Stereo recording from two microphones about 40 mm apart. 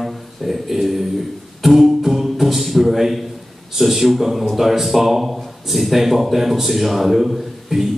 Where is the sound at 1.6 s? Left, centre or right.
Centre.